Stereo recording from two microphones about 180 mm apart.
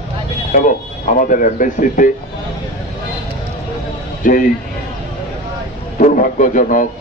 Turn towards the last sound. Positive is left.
turn(degrees=45)  # may be behind; listen again after turning